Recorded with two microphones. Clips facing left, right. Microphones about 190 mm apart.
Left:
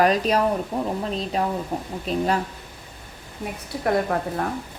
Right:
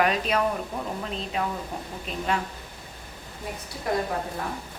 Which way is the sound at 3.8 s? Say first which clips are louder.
Left 5 dB; 60° left (ahead or behind).